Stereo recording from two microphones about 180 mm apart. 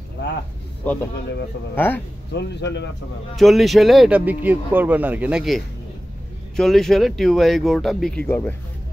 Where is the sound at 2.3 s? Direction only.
70° left (ahead or behind).